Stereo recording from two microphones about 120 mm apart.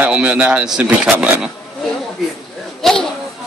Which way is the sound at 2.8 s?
5° left (ahead or behind).